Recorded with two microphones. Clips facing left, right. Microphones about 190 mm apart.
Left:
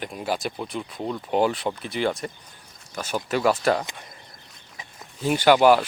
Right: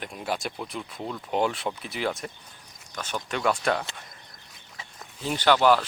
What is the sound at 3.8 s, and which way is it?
Speech, 15° left (ahead or behind).